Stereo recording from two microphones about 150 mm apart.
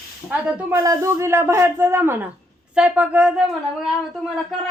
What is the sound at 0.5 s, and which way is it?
Speech, 20° right (ahead or behind).